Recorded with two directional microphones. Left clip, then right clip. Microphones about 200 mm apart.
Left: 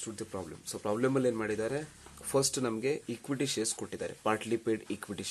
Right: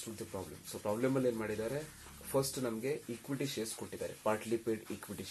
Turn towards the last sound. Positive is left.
turn(degrees=40)  # may be behind; listen again after turning